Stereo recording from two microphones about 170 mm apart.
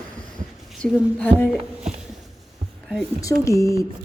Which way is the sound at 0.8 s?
5° left (ahead or behind).